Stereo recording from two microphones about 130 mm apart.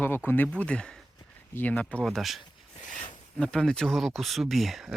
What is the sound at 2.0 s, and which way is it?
Speech, centre (ahead or behind).